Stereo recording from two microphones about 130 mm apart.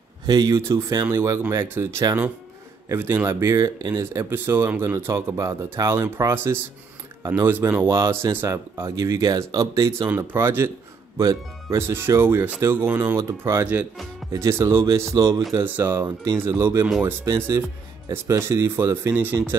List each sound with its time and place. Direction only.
0.3 s speech: 30° right (ahead or behind)
11.9 s speech: 20° right (ahead or behind)